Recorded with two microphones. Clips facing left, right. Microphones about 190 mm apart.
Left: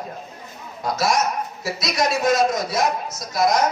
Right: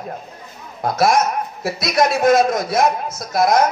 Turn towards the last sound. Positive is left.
turn(degrees=-55)  # may be behind; listen again after turning